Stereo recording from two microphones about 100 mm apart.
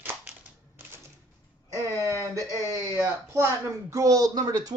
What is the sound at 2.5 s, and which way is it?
Speech, 25° right (ahead or behind).